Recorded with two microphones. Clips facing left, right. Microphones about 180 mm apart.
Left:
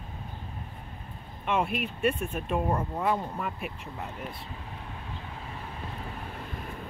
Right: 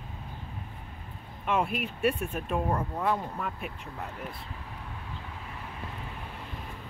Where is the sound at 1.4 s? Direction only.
Centre (ahead or behind).